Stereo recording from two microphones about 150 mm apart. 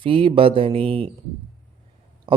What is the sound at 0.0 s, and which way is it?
Speech, 35° right (ahead or behind).